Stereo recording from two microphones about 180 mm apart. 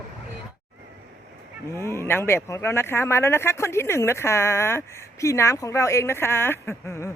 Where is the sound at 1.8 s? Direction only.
15° left (ahead or behind).